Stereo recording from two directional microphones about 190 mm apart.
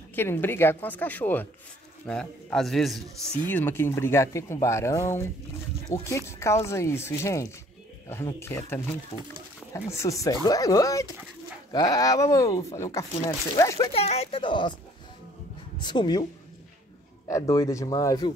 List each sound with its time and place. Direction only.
0.1 s a man's voice: 10° left (ahead or behind)
13.9 s a woman's voice: 35° left (ahead or behind)
15.8 s a woman's voice: 25° left (ahead or behind)
17.3 s speech: 15° left (ahead or behind)